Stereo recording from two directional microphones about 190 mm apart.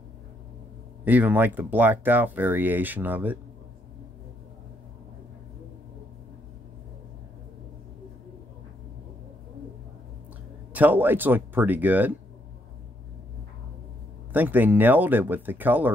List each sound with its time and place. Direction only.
1.0 s speech: 10° right (ahead or behind)
10.7 s speech: 10° right (ahead or behind)
14.3 s speech: 10° right (ahead or behind)